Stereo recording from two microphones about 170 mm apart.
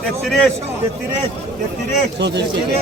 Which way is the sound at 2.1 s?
85° right.